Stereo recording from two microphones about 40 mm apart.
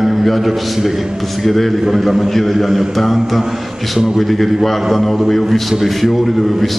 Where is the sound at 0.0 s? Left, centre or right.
Centre.